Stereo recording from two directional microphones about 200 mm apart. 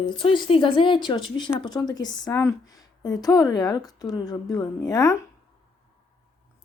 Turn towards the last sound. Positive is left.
turn(degrees=20)  # may be behind; listen again after turning